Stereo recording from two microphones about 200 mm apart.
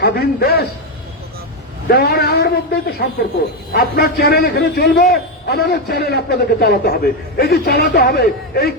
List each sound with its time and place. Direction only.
0.0 s a man's voice: 55° left (ahead or behind)
1.9 s a man's voice: 55° left (ahead or behind)